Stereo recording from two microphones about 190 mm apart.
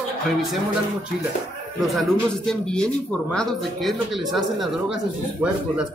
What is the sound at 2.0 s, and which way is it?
Speech, 5° left (ahead or behind).